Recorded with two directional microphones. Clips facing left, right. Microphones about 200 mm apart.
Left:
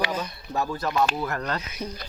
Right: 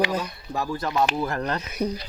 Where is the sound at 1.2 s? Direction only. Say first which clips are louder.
Right 2 dB; 25° right (ahead or behind).